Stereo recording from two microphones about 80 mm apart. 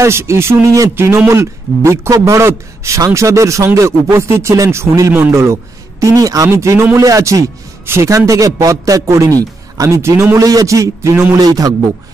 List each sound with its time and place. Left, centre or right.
0.0 s a man's voice: right